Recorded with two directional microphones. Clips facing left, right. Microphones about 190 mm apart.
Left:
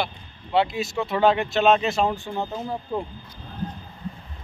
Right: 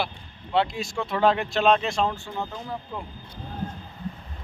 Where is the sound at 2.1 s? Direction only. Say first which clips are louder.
Left 4 dB; 20° left (ahead or behind).